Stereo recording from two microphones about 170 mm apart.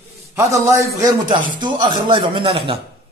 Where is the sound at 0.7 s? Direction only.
20° right (ahead or behind).